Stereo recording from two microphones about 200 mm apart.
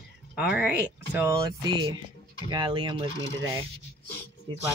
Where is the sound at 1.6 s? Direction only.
20° right (ahead or behind).